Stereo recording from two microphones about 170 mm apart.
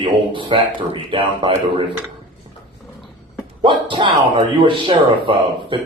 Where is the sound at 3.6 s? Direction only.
30° right (ahead or behind).